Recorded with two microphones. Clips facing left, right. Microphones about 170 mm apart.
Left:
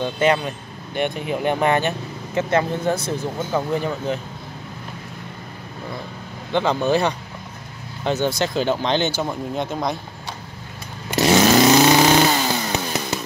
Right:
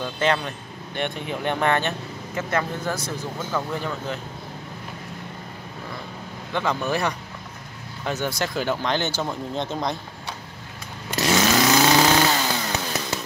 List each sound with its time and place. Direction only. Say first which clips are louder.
0.0 s speech: left 4 dB; 15° left (ahead or behind)
2.5 s speech: left 5 dB; 25° left (ahead or behind)
6.5 s speech: left 6 dB; 30° left (ahead or behind)
9.1 s speech: left 3 dB; 10° left (ahead or behind)
11.1 s chainsaw: left 6 dB; 30° left (ahead or behind)